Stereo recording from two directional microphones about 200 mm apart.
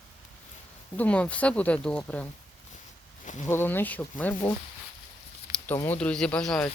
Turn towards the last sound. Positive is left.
turn(degrees=5)  # may be behind; listen again after turning